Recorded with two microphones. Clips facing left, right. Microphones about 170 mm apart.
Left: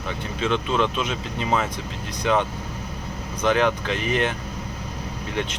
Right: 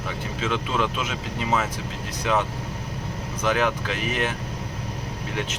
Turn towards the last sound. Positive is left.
turn(degrees=-5)  # may be behind; listen again after turning